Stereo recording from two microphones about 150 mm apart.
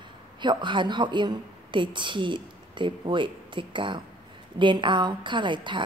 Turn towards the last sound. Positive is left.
turn(degrees=-30)  # may be behind; listen again after turning